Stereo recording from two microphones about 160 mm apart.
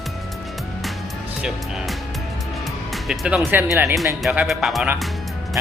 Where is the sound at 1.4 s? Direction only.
Centre (ahead or behind).